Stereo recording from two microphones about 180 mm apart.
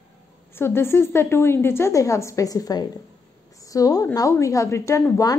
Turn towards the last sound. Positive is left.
turn(degrees=20)  # may be behind; listen again after turning